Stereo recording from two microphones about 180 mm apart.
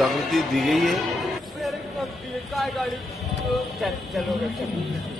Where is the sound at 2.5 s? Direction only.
Centre (ahead or behind).